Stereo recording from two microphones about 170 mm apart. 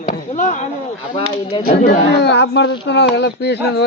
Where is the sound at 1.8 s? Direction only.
75° left (ahead or behind).